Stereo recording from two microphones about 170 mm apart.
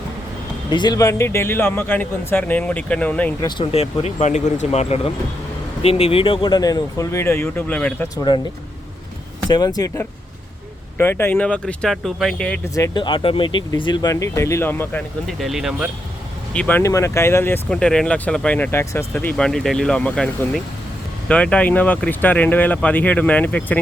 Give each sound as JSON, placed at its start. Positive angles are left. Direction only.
{"t": 0.7, "sound": "speech", "side_deg": 25}
{"t": 3.4, "sound": "speech", "side_deg": 35}
{"t": 8.1, "sound": "speech", "side_deg": 25}
{"t": 9.5, "sound": "speech", "side_deg": 20}
{"t": 12.7, "sound": "speech", "side_deg": 20}
{"t": 15.4, "sound": "speech", "side_deg": 0}
{"t": 16.5, "sound": "speech", "side_deg": 10}